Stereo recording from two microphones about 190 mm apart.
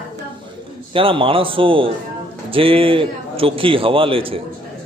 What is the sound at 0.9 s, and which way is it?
A man's voice, 30° right (ahead or behind).